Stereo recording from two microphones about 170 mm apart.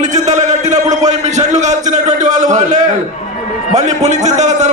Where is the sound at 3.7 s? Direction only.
45° right (ahead or behind).